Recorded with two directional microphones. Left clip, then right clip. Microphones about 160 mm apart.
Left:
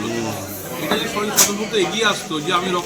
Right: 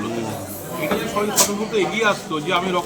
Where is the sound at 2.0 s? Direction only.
5° left (ahead or behind).